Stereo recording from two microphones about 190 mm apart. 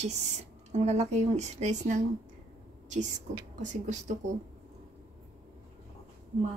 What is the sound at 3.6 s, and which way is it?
Speech, 40° right (ahead or behind).